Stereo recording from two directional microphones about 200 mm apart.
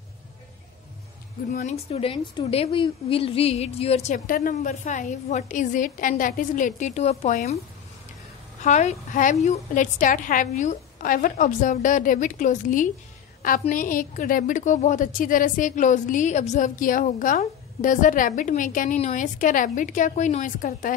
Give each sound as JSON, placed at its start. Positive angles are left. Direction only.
{"t": 1.5, "sound": "a woman's voice", "side_deg": 40}
{"t": 4.3, "sound": "a woman's voice", "side_deg": 45}
{"t": 8.6, "sound": "a woman's voice", "side_deg": 35}